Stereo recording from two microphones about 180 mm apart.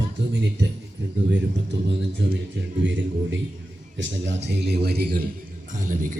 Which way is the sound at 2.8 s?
90° right.